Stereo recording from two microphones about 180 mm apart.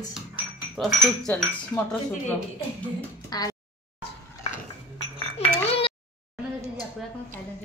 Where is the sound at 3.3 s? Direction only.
20° left (ahead or behind).